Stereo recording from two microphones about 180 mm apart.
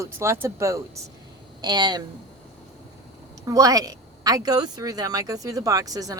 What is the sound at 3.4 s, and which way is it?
Speech, 20° right (ahead or behind).